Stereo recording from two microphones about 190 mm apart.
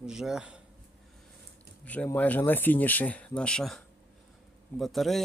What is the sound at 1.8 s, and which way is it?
Speech, 10° left (ahead or behind).